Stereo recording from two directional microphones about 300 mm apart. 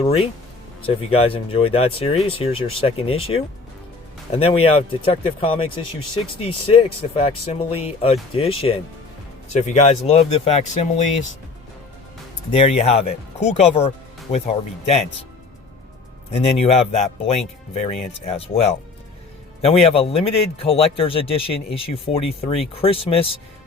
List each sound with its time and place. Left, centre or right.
0.0 s speech: centre
12.5 s speech: left
16.3 s speech: left